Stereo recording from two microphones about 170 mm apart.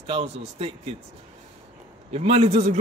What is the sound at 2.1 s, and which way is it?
Speech, 35° right (ahead or behind).